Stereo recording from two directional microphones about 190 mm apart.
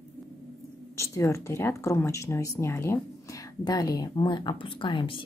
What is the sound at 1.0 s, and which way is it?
Speech, 15° left (ahead or behind).